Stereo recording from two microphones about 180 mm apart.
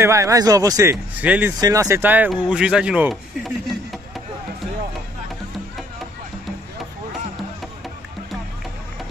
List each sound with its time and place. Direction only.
0.0 s speech: 15° right (ahead or behind)
1.2 s speech: 10° right (ahead or behind)
1.6 s speech: 20° right (ahead or behind); by 4.0 s centre (ahead or behind)